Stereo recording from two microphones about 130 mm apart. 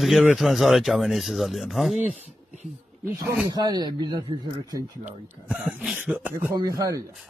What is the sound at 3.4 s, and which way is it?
Speech, 30° right (ahead or behind).